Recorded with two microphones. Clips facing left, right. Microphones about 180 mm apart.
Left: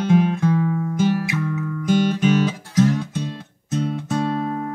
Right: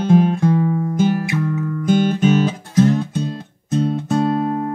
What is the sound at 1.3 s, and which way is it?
Music, 40° right (ahead or behind).